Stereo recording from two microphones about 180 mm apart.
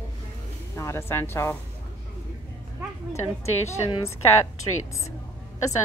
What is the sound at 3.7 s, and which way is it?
Speech, 15° left (ahead or behind).